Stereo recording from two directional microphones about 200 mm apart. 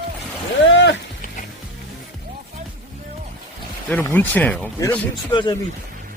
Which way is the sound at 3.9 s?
10° left (ahead or behind).